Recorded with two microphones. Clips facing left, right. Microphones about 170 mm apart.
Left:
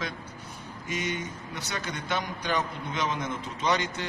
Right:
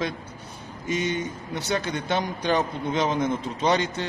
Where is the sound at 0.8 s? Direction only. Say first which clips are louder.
Right 6 dB; 25° right (ahead or behind).